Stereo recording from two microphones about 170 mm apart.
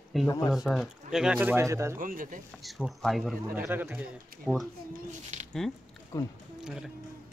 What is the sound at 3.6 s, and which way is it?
Speech, 10° right (ahead or behind).